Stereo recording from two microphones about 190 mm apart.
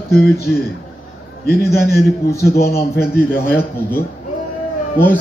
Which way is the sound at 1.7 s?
55° left (ahead or behind).